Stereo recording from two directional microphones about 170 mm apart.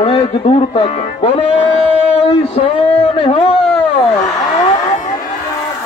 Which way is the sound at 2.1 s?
35° left (ahead or behind).